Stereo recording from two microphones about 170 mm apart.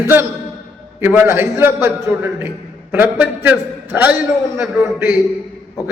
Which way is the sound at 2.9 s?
10° right (ahead or behind).